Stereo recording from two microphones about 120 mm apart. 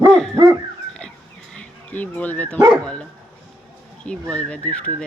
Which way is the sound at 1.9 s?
15° left (ahead or behind).